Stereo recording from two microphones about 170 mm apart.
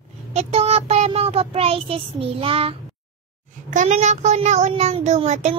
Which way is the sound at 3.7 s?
45° right (ahead or behind).